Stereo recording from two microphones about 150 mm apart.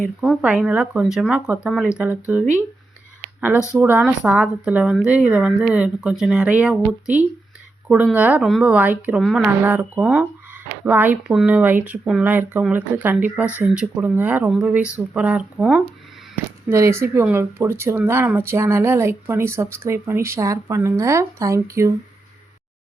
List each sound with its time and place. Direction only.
0.2 s speech: 5° right (ahead or behind)
3.8 s speech: 15° right (ahead or behind)